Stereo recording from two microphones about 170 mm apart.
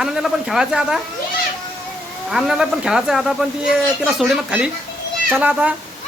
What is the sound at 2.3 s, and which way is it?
Speech, 5° right (ahead or behind).